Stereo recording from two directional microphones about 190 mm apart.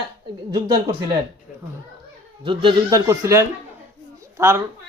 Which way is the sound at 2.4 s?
25° right (ahead or behind).